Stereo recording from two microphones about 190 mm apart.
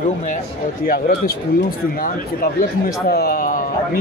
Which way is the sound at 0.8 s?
50° left (ahead or behind).